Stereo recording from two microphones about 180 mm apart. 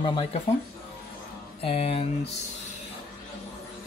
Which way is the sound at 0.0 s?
30° left (ahead or behind).